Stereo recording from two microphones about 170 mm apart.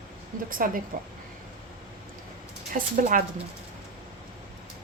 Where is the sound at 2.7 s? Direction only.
50° right (ahead or behind).